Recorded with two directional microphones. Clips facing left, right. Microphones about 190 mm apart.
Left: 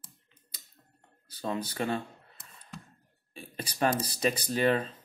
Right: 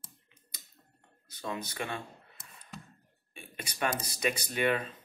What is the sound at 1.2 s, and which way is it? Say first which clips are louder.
Speech: left 4 dB; 35° left (ahead or behind).